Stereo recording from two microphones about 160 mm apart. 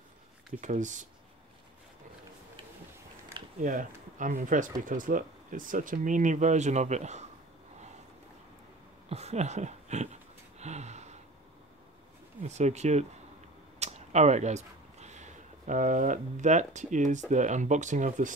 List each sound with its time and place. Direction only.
0.6 s speech: 50° right (ahead or behind)
3.6 s speech: 55° right (ahead or behind)
9.1 s speech: 40° right (ahead or behind)
10.6 s gasp: 45° right (ahead or behind)
12.4 s speech: 45° right (ahead or behind)